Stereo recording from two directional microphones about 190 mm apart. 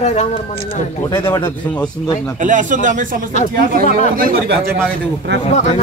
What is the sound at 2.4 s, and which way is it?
Speech, 40° right (ahead or behind).